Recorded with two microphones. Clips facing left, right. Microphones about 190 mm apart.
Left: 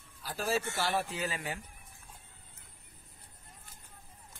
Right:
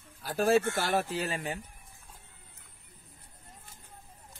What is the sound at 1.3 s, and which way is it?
Speech, 30° right (ahead or behind).